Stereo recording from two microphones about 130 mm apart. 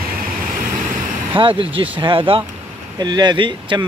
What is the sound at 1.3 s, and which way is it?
Speech, 40° right (ahead or behind).